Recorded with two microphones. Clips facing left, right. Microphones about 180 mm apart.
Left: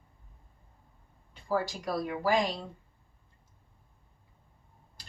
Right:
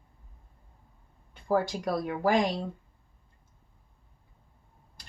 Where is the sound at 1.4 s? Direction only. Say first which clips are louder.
Right 4 dB; 55° right (ahead or behind).